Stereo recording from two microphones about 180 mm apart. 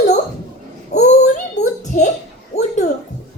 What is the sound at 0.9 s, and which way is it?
Child singing, 65° left (ahead or behind).